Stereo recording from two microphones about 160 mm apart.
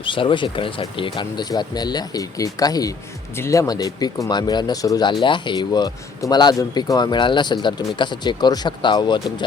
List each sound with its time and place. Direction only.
0.0 s speech: 30° left (ahead or behind)